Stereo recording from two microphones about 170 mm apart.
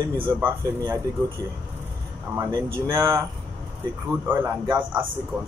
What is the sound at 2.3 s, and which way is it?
A man's voice, 15° right (ahead or behind).